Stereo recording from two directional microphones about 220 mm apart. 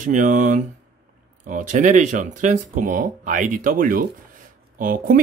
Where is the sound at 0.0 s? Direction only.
35° right (ahead or behind).